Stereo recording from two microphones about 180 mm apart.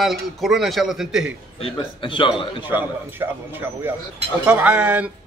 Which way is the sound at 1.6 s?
30° left (ahead or behind).